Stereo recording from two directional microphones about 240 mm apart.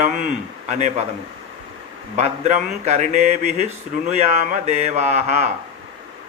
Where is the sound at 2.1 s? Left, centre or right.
Right.